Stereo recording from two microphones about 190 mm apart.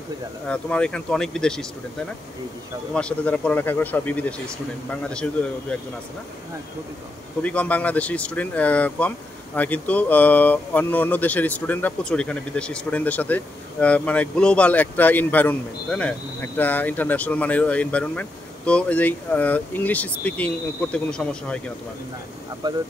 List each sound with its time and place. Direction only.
0.5 s speech: 5° left (ahead or behind)
2.9 s speech: 5° left (ahead or behind)
7.4 s speech: 5° left (ahead or behind)
22.6 s speech: 20° right (ahead or behind)